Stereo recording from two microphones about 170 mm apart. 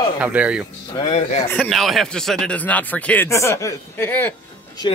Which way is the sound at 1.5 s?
5° left (ahead or behind).